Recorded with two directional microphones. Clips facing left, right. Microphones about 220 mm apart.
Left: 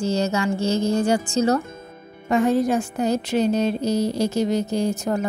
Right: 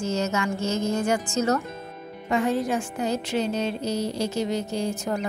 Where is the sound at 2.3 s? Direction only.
40° left (ahead or behind).